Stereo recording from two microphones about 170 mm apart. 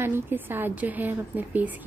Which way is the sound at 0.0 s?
15° right (ahead or behind).